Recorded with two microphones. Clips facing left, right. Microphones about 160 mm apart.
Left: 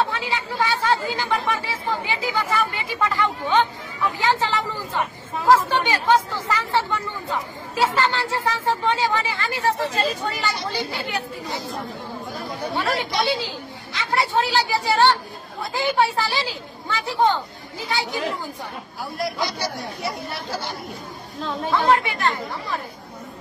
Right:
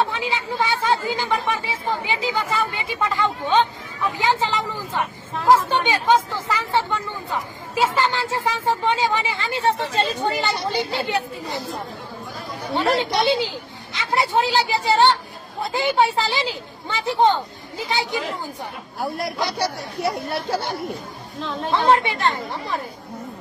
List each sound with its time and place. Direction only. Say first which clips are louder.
0.0 s speech: right 1 dB; 20° right (ahead or behind)
12.8 s speech: right 5 dB; 20° right (ahead or behind)
21.8 s speech: right 2 dB; 25° right (ahead or behind)